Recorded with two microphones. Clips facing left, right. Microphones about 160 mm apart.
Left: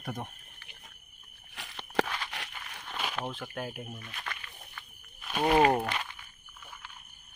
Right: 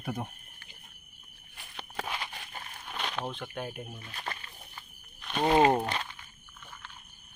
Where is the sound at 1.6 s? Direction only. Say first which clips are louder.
Left 6 dB; 90° left.